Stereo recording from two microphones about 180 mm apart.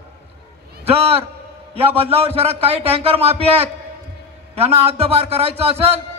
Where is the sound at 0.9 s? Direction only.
35° right (ahead or behind).